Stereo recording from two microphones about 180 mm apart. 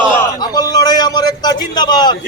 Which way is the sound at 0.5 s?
20° left (ahead or behind).